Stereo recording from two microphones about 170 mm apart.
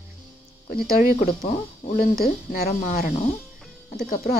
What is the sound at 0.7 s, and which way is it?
Speech, 55° left (ahead or behind).